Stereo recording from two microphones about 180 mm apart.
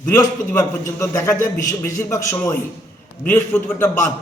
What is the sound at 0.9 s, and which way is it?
A man's voice, 15° left (ahead or behind).